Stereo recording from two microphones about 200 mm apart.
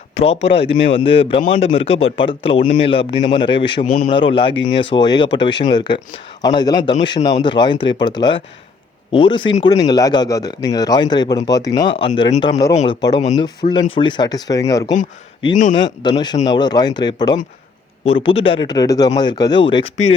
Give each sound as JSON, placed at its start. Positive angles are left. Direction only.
{"t": 0.4, "sound": "speech", "side_deg": 30}
{"t": 12.7, "sound": "speech", "side_deg": 35}
{"t": 13.0, "sound": "speech", "side_deg": 20}